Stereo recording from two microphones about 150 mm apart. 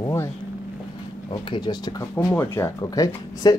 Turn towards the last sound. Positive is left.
turn(degrees=25)  # may be behind; listen again after turning